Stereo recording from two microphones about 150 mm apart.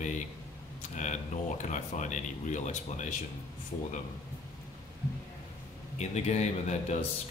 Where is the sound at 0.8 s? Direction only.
55° left (ahead or behind).